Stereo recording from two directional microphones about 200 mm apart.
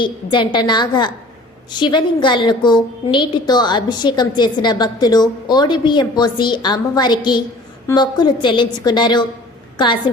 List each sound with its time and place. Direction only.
0.0 s a woman's voice: 25° left (ahead or behind)